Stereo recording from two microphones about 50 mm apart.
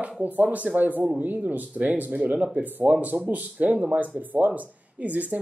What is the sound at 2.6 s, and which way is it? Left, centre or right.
Speech, right.